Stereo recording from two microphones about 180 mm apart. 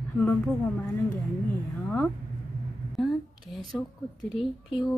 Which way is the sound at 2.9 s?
Centre (ahead or behind).